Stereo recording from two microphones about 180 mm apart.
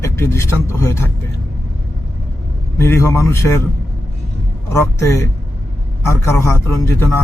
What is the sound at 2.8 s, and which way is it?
Speech, 15° left (ahead or behind).